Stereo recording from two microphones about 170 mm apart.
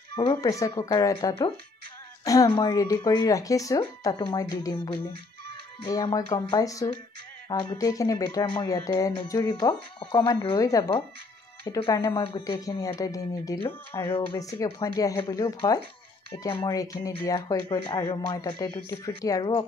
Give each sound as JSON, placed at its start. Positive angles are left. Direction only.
{"t": 0.3, "sound": "speech", "side_deg": 20}
{"t": 11.9, "sound": "speech", "side_deg": 20}